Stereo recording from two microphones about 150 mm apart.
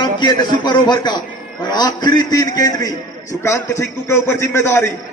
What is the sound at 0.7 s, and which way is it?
A man's voice, 30° left (ahead or behind).